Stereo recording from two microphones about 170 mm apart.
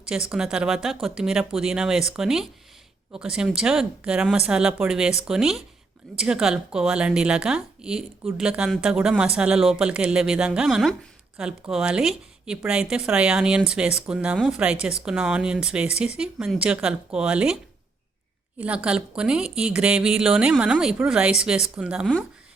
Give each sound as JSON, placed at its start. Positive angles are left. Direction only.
{"t": 0.1, "sound": "a woman's voice", "side_deg": -5}
{"t": 18.6, "sound": "a woman's voice", "side_deg": -5}